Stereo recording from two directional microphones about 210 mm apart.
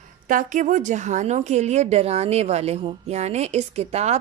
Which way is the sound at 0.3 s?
40° right (ahead or behind).